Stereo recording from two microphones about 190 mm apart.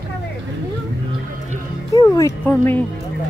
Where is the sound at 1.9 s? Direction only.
15° left (ahead or behind).